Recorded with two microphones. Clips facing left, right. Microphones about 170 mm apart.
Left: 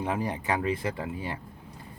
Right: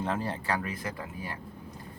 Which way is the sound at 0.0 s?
15° left (ahead or behind).